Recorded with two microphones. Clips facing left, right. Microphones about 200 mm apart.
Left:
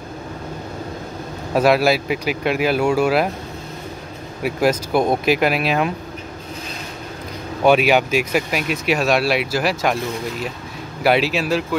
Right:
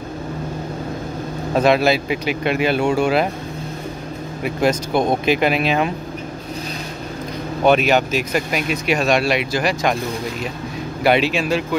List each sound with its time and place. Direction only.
1.5 s speech: 5° left (ahead or behind)
4.4 s speech: 5° left (ahead or behind)
7.6 s speech: 10° left (ahead or behind)
11.1 s speech: 5° left (ahead or behind)